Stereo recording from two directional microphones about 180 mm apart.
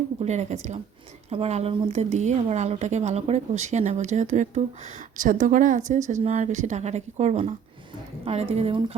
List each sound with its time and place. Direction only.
0.2 s a woman's voice: 40° right (ahead or behind)